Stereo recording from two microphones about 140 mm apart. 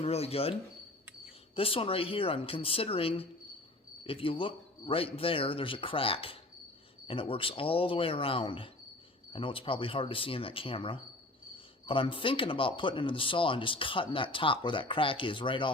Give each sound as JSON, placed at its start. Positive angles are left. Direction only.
{"t": 0.0, "sound": "speech", "side_deg": 45}
{"t": 1.5, "sound": "speech", "side_deg": 40}